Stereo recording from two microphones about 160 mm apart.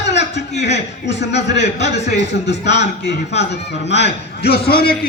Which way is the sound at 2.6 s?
45° left (ahead or behind).